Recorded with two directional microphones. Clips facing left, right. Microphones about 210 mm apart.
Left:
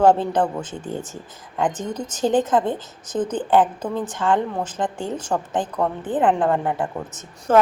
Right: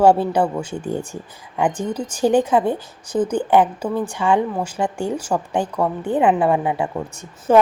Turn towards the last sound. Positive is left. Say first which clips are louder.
# right 3 dB
turn(degrees=-15)  # may be behind; listen again after turning